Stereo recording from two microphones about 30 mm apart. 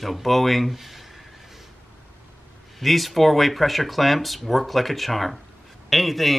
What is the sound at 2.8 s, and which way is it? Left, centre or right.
Speech, centre.